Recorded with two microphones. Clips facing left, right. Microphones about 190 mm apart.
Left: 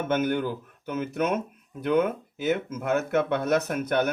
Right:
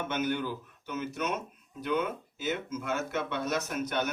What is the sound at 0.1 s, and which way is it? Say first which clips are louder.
Speech: left 7 dB; 50° left (ahead or behind).